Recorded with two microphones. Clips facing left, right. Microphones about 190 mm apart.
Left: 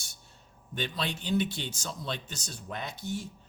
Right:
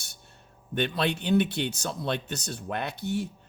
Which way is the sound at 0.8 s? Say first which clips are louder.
Right 7 dB; 60° right (ahead or behind).